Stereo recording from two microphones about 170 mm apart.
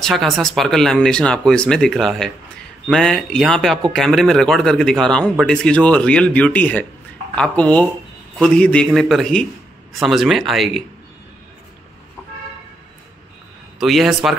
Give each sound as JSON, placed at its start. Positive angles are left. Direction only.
{"t": 0.0, "sound": "speech", "side_deg": 0}
{"t": 13.7, "sound": "speech", "side_deg": 0}